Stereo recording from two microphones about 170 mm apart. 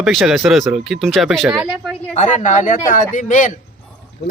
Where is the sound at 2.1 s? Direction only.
45° left (ahead or behind).